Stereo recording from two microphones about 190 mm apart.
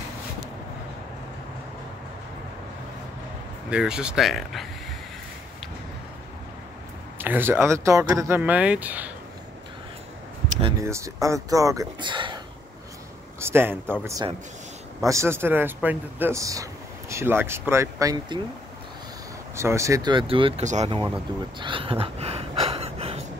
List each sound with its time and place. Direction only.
3.7 s speech: 5° right (ahead or behind)
7.2 s speech: 10° right (ahead or behind)
10.8 s speech: 15° right (ahead or behind)
13.4 s speech: 10° right (ahead or behind)
19.5 s speech: 15° right (ahead or behind); by 21.0 s 35° right (ahead or behind)
21.5 s a sound: 25° right (ahead or behind)